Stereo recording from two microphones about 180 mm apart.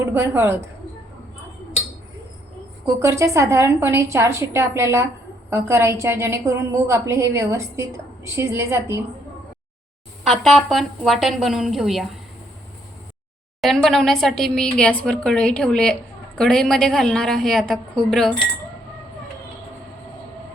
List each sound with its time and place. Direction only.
0.0 s a woman's voice: 15° right (ahead or behind)
2.8 s a woman's voice: 15° right (ahead or behind)
10.2 s a woman's voice: centre (ahead or behind)
13.6 s a woman's voice: centre (ahead or behind)